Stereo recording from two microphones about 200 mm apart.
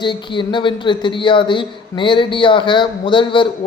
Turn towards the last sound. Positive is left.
turn(degrees=25)  # may be behind; listen again after turning